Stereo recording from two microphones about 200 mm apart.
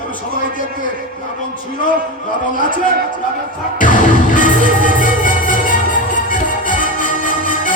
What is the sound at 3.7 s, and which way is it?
Music, 40° left (ahead or behind).